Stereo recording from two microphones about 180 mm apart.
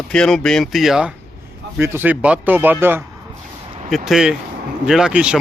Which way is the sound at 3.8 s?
Centre (ahead or behind).